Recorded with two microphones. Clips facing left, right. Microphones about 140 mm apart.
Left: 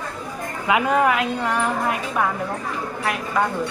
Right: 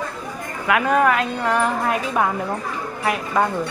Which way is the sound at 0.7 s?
15° left (ahead or behind).